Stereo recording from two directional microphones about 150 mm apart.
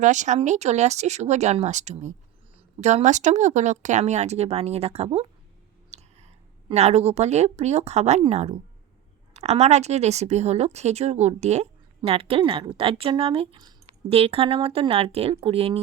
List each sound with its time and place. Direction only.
0.0 s a woman's voice: 55° right (ahead or behind)